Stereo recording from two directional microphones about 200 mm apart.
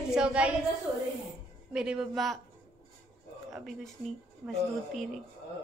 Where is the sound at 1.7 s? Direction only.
5° right (ahead or behind).